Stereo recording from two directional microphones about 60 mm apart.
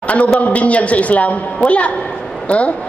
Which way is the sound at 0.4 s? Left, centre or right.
Left.